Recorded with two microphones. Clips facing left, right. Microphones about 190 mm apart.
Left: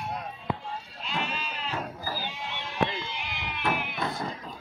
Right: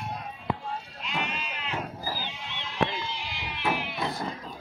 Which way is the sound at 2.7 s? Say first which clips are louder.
Right 1 dB; 55° left (ahead or behind).